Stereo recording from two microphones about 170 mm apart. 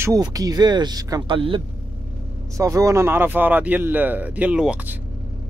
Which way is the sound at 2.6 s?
20° right (ahead or behind).